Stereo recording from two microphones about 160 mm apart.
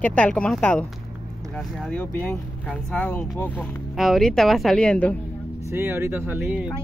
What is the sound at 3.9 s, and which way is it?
Speech, centre (ahead or behind).